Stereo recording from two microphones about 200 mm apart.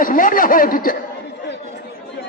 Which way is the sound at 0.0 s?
45° left (ahead or behind).